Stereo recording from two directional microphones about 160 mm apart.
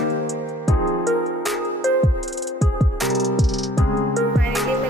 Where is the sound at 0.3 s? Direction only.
Centre (ahead or behind).